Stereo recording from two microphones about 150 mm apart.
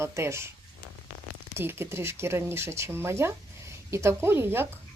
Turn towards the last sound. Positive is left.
turn(degrees=-15)  # may be behind; listen again after turning